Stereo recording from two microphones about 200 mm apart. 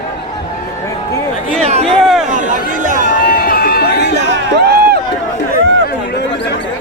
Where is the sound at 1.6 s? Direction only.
30° right (ahead or behind).